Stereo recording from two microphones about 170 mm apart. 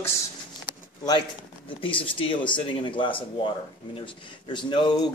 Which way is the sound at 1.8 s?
30° left (ahead or behind).